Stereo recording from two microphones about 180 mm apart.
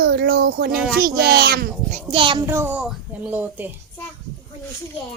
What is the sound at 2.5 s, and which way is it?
Speech, 15° right (ahead or behind).